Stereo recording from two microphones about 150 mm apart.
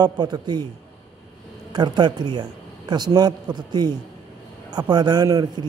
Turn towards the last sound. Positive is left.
turn(degrees=-25)  # may be behind; listen again after turning